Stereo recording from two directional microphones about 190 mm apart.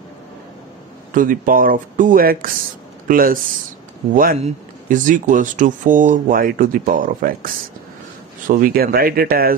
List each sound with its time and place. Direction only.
1.1 s speech: 45° right (ahead or behind)